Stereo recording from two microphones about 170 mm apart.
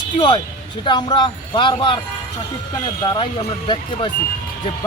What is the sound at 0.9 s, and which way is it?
Speech, 25° left (ahead or behind).